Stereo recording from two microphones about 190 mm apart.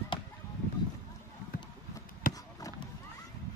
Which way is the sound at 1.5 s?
55° left (ahead or behind).